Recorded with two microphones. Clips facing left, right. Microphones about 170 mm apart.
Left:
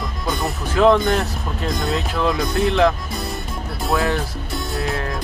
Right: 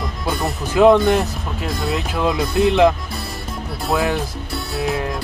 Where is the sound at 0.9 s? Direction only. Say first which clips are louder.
Right 3 dB; 5° right (ahead or behind).